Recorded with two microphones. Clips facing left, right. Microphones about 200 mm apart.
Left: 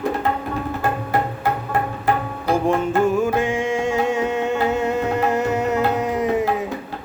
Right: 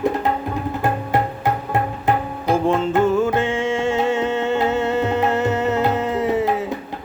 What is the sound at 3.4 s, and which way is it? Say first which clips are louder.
Music: right 1 dB; 15° left (ahead or behind).